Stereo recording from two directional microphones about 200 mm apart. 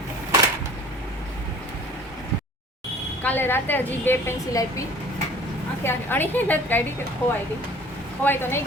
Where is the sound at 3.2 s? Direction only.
10° left (ahead or behind).